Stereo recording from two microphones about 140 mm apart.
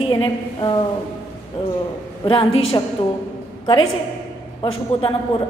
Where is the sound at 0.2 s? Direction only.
35° left (ahead or behind).